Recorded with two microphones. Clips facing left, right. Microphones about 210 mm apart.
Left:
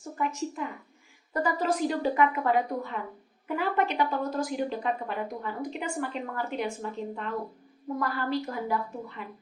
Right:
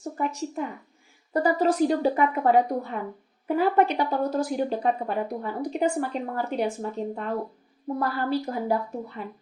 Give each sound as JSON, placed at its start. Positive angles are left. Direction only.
{"t": 0.2, "sound": "speech", "side_deg": -40}